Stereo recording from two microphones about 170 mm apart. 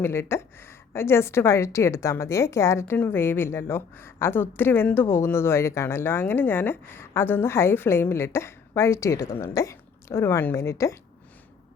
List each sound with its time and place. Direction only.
0.0 s a woman's voice: 15° left (ahead or behind)